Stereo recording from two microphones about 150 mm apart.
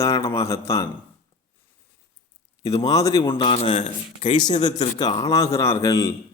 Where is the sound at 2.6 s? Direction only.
25° left (ahead or behind).